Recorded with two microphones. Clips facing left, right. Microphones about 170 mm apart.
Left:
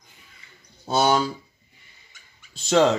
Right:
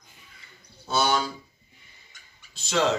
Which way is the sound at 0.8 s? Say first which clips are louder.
Left 4 dB; 45° left (ahead or behind).